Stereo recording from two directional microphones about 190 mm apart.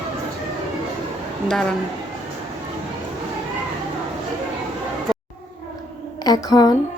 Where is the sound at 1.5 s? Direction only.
5° left (ahead or behind).